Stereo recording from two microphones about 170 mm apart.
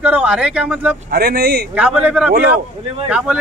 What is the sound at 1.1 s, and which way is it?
Speech, 65° right (ahead or behind).